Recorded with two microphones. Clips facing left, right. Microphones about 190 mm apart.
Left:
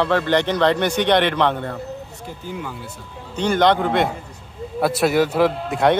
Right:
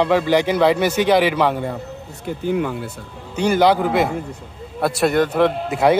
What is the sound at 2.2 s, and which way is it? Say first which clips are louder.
Speech: right 11 dB; 65° right (ahead or behind).